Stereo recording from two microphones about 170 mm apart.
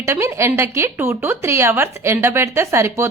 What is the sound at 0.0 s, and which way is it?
Speech, 15° right (ahead or behind).